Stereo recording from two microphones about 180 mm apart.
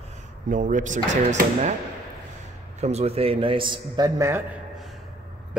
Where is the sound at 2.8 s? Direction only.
35° right (ahead or behind); by 4.4 s 15° right (ahead or behind).